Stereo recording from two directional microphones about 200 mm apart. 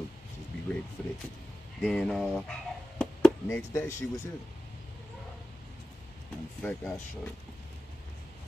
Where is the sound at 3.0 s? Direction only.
5° left (ahead or behind).